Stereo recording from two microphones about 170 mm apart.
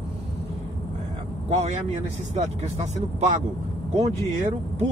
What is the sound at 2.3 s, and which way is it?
Speech, 40° right (ahead or behind).